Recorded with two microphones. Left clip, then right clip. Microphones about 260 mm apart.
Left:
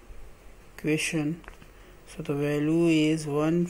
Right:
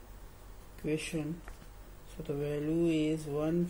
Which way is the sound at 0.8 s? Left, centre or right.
Left.